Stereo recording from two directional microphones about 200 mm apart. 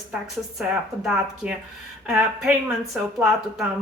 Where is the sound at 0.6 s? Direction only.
Centre (ahead or behind).